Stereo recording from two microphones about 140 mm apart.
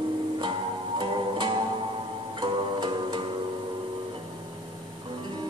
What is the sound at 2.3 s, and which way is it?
Music, 35° right (ahead or behind).